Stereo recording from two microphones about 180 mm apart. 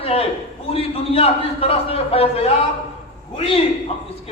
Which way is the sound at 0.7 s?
30° left (ahead or behind).